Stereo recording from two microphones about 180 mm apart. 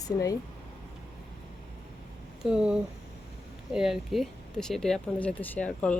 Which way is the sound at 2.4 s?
5° right (ahead or behind).